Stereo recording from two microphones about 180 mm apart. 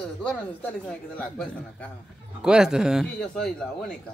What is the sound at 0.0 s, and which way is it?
Speech, 5° left (ahead or behind).